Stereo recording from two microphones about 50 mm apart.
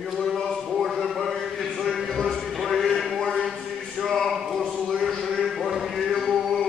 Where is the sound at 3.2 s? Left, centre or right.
Centre.